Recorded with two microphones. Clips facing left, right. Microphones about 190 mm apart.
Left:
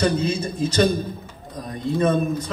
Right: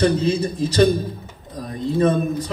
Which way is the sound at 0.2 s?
35° right (ahead or behind).